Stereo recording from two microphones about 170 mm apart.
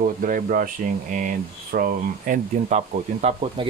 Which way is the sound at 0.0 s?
55° right (ahead or behind).